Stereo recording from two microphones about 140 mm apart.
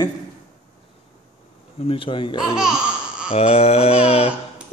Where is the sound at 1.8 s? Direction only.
40° left (ahead or behind).